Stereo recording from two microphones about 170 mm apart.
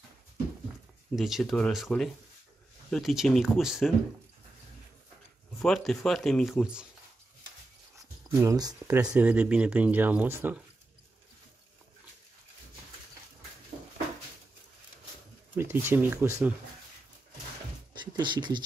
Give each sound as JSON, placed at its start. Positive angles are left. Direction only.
{"t": 1.1, "sound": "speech", "side_deg": 0}
{"t": 5.6, "sound": "speech", "side_deg": 0}
{"t": 8.0, "sound": "a sound", "side_deg": -20}
{"t": 8.9, "sound": "speech", "side_deg": -10}
{"t": 15.5, "sound": "speech", "side_deg": -15}
{"t": 18.0, "sound": "speech", "side_deg": -25}